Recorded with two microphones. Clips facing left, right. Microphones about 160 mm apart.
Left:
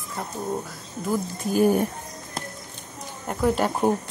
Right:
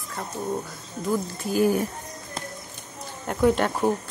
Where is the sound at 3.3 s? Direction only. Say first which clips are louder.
Right 2 dB; centre (ahead or behind).